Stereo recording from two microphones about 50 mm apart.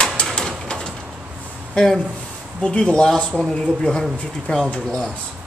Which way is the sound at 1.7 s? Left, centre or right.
Centre.